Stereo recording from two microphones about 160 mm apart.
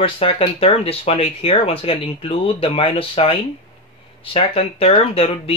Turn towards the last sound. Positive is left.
turn(degrees=40)  # may be behind; listen again after turning